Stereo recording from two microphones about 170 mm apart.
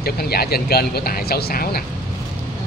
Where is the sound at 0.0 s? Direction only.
65° left (ahead or behind).